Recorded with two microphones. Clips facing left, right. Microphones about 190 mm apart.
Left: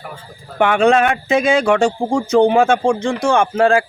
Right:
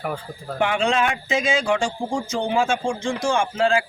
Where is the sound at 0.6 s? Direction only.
60° left (ahead or behind).